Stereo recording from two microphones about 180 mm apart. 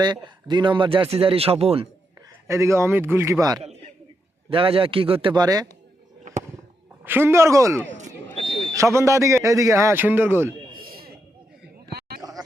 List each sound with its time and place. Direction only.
0.0 s a man's voice: 25° right (ahead or behind)
2.5 s a man's voice: 15° right (ahead or behind)
4.4 s a man's voice: 30° right (ahead or behind)
7.0 s a man's voice: 10° right (ahead or behind)
10.7 s a sound: 55° right (ahead or behind)